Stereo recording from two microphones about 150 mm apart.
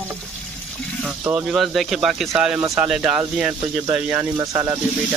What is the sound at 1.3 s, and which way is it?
Speech, centre (ahead or behind).